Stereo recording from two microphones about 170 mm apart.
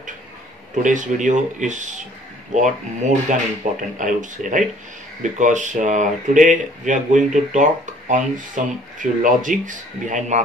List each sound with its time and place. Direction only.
0.8 s speech: 45° right (ahead or behind)